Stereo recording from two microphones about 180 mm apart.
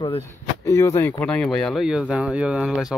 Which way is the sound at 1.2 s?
5° left (ahead or behind).